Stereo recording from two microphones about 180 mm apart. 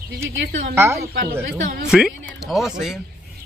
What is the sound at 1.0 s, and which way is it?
Speech, 60° right (ahead or behind).